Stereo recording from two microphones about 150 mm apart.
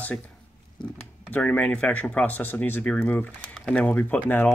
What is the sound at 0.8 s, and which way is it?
Speech, 30° left (ahead or behind).